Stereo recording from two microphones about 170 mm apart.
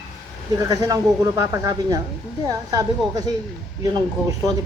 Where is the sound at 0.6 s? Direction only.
20° right (ahead or behind).